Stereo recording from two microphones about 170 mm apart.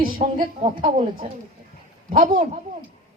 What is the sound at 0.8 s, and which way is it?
Speech, 30° right (ahead or behind).